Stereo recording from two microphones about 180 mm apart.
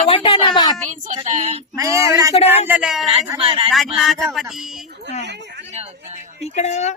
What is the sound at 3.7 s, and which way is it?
Speech, centre (ahead or behind).